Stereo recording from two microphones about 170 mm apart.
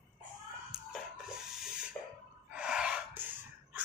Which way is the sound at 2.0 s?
20° left (ahead or behind).